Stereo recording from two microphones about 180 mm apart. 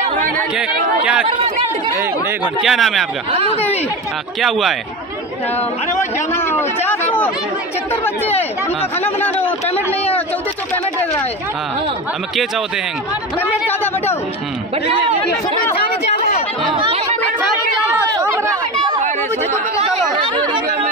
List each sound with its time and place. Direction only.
0.6 s a man's voice: 5° right (ahead or behind)
4.4 s a man's voice: centre (ahead or behind)
6.1 s speech: 15° left (ahead or behind)
9.2 s speech: 10° left (ahead or behind)
15.7 s a sound: 35° left (ahead or behind)
16.7 s chatter: 30° right (ahead or behind)
18.2 s chatter: 15° right (ahead or behind)
18.9 s chatter: 45° right (ahead or behind)
20.2 s chatter: 25° right (ahead or behind)